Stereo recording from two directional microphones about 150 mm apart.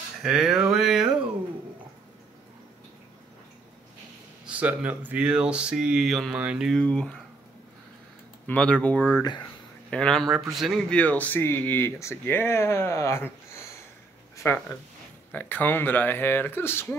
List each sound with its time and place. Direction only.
0.2 s speech: 5° right (ahead or behind)
4.5 s speech: 10° right (ahead or behind)
6.8 s speech: 5° left (ahead or behind)
8.5 s speech: 5° left (ahead or behind)
9.2 s speech: 30° left (ahead or behind)
9.8 s speech: 5° left (ahead or behind)
11.0 s speech: 10° left (ahead or behind)
14.3 s a sound: 15° left (ahead or behind)
15.3 s speech: 10° left (ahead or behind)